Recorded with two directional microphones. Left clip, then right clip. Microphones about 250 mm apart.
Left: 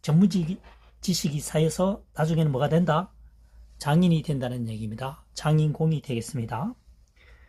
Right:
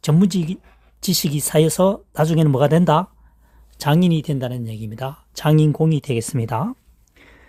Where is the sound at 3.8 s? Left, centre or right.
Right.